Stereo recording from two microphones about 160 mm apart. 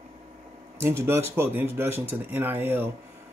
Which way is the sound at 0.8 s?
15° right (ahead or behind).